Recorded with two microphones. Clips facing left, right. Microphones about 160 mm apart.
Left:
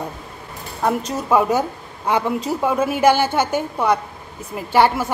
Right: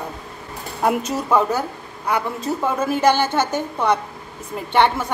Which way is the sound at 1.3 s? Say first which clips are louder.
Left 3 dB; 15° left (ahead or behind).